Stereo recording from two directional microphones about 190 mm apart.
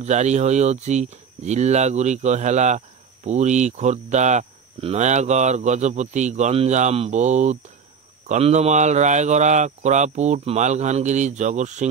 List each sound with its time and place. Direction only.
0.0 s speech: 35° right (ahead or behind)